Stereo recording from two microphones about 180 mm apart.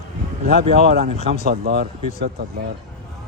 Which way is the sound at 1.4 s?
60° right (ahead or behind).